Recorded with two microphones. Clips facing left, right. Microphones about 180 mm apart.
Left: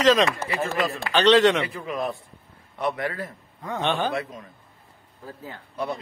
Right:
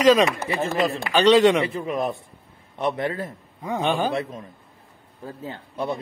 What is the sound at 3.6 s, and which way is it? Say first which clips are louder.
Speech: right 2 dB; 10° right (ahead or behind).